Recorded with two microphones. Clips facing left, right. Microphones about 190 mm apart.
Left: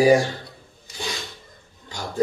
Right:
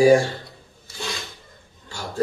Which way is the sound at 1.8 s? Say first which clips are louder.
Left 1 dB; 15° left (ahead or behind).